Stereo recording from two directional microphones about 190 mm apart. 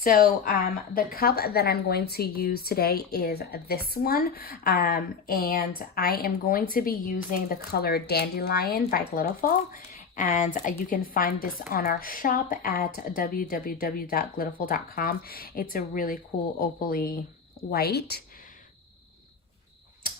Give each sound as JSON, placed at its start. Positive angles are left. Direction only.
{"t": 0.0, "sound": "a woman's voice", "side_deg": 50}